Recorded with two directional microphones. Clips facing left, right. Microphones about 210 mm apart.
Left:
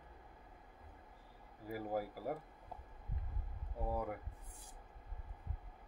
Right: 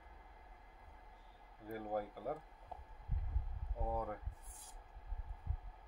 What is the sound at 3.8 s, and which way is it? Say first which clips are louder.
Speech: left 1 dB; 10° left (ahead or behind).